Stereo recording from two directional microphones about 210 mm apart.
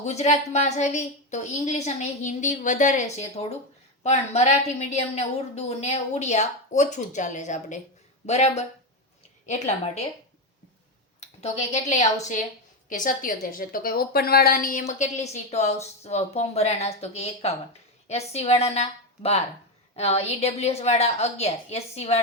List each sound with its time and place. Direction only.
0.0 s a woman's voice: 30° left (ahead or behind)
11.2 s a woman's voice: 30° left (ahead or behind)